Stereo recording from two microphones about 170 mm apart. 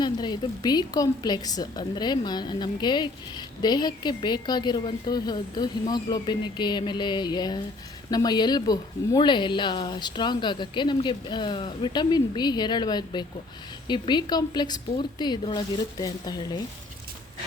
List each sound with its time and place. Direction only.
0.0 s a woman's voice: 25° left (ahead or behind)